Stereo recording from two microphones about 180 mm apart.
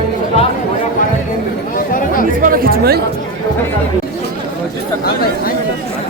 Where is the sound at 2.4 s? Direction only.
55° right (ahead or behind).